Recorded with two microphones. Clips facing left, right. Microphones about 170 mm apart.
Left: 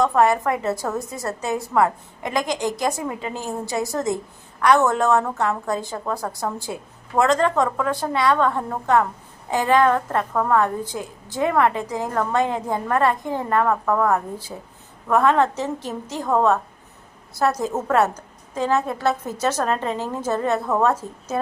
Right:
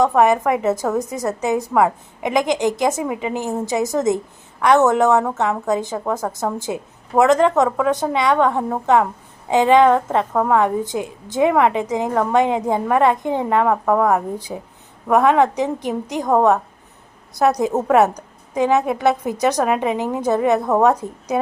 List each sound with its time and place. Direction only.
0.0 s a woman's voice: 20° right (ahead or behind)